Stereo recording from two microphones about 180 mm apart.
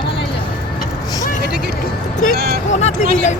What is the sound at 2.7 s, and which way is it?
Speech, 40° left (ahead or behind).